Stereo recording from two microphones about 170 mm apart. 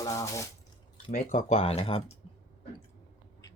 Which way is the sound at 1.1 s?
50° left (ahead or behind).